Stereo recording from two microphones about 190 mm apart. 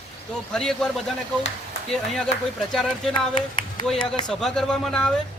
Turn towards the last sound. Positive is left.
turn(degrees=5)  # may be behind; listen again after turning